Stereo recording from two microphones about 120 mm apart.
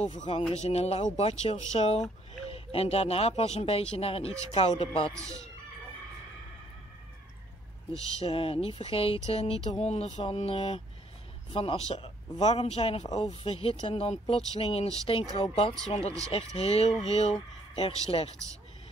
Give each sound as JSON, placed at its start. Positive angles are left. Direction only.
{"t": 0.3, "sound": "speech", "side_deg": 55}
{"t": 4.6, "sound": "music", "side_deg": 50}
{"t": 5.1, "sound": "speech", "side_deg": -25}
{"t": 8.2, "sound": "music", "side_deg": 50}
{"t": 10.3, "sound": "speech", "side_deg": 55}
{"t": 12.4, "sound": "speech", "side_deg": 65}
{"t": 13.2, "sound": "music", "side_deg": 50}
{"t": 15.9, "sound": "speech", "side_deg": 60}
{"t": 18.1, "sound": "a man's voice", "side_deg": 40}